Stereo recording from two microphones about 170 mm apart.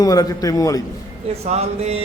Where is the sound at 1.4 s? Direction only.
40° right (ahead or behind).